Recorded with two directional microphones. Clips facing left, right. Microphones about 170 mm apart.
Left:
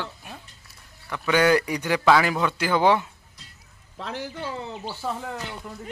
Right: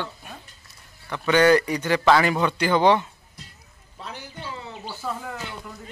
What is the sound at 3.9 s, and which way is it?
Speech, 90° left.